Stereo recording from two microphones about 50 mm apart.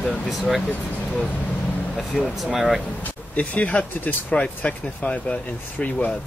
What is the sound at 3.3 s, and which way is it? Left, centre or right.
Speech, left.